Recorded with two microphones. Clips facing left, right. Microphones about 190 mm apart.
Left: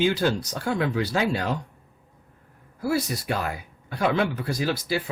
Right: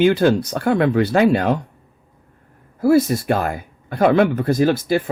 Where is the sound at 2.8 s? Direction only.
50° right (ahead or behind).